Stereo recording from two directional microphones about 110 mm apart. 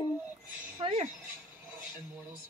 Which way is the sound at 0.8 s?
60° right (ahead or behind).